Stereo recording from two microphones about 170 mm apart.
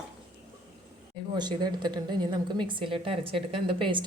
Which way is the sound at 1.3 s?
25° right (ahead or behind).